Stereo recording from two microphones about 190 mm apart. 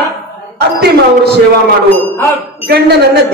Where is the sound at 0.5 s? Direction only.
60° right (ahead or behind).